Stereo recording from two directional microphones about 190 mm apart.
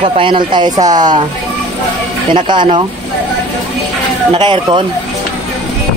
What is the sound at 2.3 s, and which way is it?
Speech, 25° right (ahead or behind).